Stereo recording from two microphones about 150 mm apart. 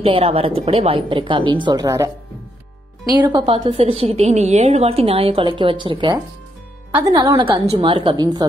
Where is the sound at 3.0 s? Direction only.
30° right (ahead or behind).